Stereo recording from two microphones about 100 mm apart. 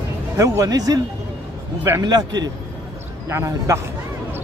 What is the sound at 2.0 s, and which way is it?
Speech, 45° right (ahead or behind).